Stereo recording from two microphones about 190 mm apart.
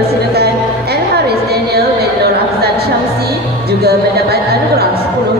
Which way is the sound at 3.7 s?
55° right (ahead or behind).